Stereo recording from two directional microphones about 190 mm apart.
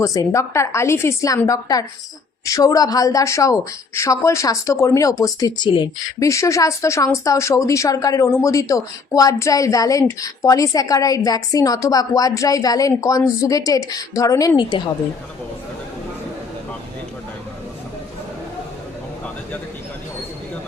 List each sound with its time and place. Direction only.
0.0 s speech: 15° left (ahead or behind)